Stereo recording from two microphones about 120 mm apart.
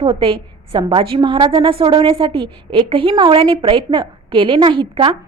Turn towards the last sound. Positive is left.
turn(degrees=-45)  # may be behind; listen again after turning